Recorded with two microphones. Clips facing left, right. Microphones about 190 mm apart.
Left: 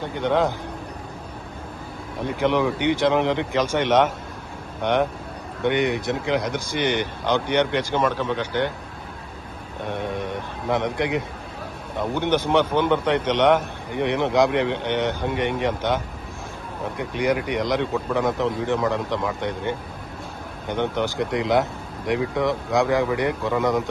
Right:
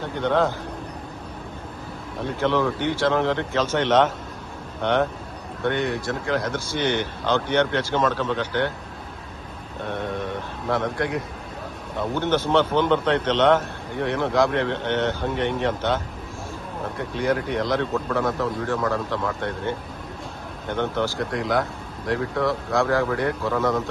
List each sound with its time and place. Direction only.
0.0 s speech: 15° left (ahead or behind)
2.2 s speech: 15° left (ahead or behind)
9.8 s speech: 15° left (ahead or behind)
17.0 s speech: 15° left (ahead or behind)